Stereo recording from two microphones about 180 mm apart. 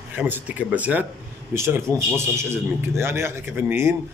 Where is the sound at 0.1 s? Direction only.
10° right (ahead or behind).